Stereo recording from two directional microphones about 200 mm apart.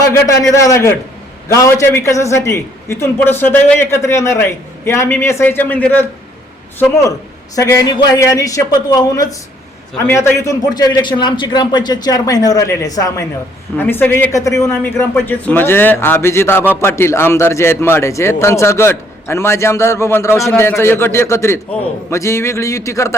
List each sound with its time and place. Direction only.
0.0 s a man's voice: 15° left (ahead or behind)